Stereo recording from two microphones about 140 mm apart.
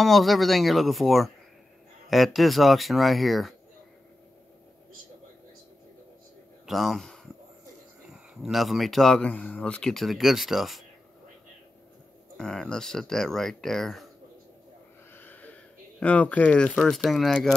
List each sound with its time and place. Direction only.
0.0 s speech: centre (ahead or behind)
6.6 s speech: centre (ahead or behind)
12.4 s speech: 5° left (ahead or behind)
15.1 s speech: 10° left (ahead or behind)